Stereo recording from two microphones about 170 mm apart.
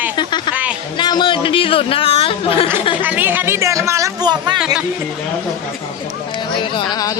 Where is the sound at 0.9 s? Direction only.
25° left (ahead or behind).